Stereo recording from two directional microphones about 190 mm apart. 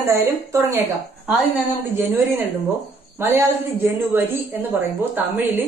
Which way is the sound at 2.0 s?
10° right (ahead or behind).